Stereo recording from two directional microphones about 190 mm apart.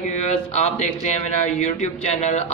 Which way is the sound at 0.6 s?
35° left (ahead or behind).